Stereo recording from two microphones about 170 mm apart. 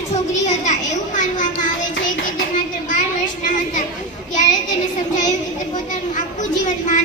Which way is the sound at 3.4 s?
50° left (ahead or behind).